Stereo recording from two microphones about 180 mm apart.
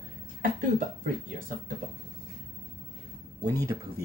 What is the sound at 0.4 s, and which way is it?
Speech, 45° right (ahead or behind).